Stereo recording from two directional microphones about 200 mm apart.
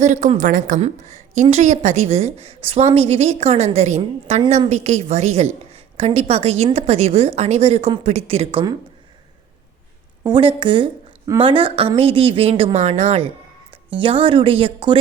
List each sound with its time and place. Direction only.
0.0 s a woman's voice: 35° right (ahead or behind)
10.2 s a woman's voice: 25° right (ahead or behind)